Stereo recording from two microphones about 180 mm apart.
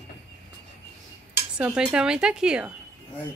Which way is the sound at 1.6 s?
5° right (ahead or behind).